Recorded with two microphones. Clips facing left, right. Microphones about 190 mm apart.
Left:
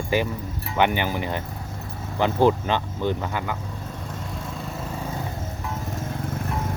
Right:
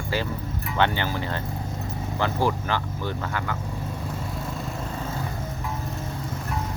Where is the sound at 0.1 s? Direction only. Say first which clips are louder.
Left 4 dB; 20° left (ahead or behind).